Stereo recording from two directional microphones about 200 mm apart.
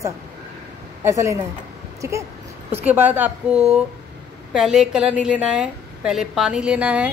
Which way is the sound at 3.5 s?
30° right (ahead or behind).